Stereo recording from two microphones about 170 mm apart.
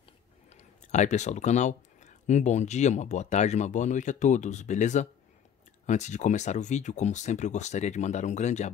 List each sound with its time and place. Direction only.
0.5 s speech: 40° left (ahead or behind)